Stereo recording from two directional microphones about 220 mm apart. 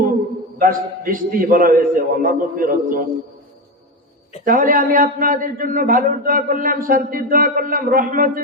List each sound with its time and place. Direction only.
0.6 s a man's voice: 40° right (ahead or behind)
4.4 s a man's voice: 40° right (ahead or behind)